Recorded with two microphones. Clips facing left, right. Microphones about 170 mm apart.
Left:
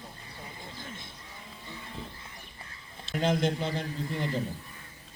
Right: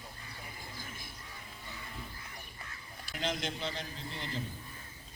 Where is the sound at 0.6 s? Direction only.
25° left (ahead or behind).